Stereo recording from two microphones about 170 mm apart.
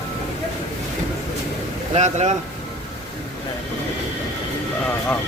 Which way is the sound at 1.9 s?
40° right (ahead or behind).